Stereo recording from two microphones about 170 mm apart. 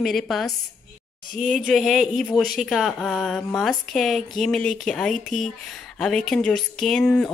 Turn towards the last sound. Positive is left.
turn(degrees=5)  # may be behind; listen again after turning